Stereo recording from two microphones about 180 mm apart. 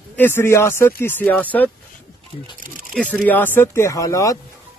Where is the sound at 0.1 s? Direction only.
10° left (ahead or behind).